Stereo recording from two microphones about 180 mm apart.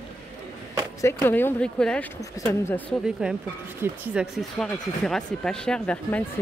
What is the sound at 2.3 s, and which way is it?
Speech, 20° left (ahead or behind).